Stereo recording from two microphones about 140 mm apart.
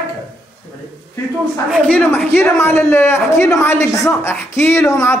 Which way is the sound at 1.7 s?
5° left (ahead or behind).